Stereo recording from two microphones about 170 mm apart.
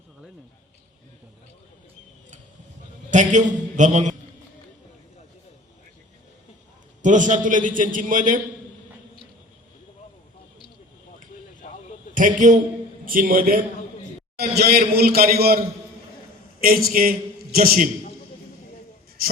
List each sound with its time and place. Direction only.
3.1 s a man's voice: 45° right (ahead or behind)
7.0 s a man's voice: 45° right (ahead or behind)
11.6 s a sound: 45° left (ahead or behind)
12.1 s a man's voice: 50° right (ahead or behind)
14.3 s a man's voice: 70° right (ahead or behind)